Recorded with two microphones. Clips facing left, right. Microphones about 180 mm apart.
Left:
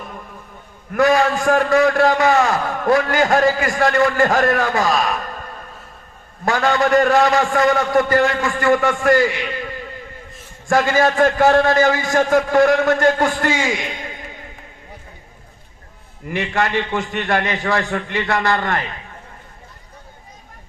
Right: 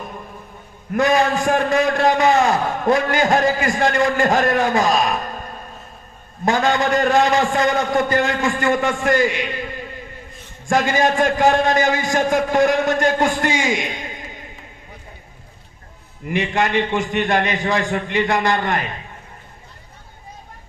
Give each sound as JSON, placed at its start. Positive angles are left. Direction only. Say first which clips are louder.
{"t": 0.9, "sound": "a man's voice", "louder": "left 2 dB", "side_deg": -20}
{"t": 6.4, "sound": "a man's voice", "louder": "even", "side_deg": -20}
{"t": 10.7, "sound": "a man's voice", "louder": "left 1 dB", "side_deg": -20}
{"t": 16.2, "sound": "a man's voice", "louder": "right 1 dB", "side_deg": -20}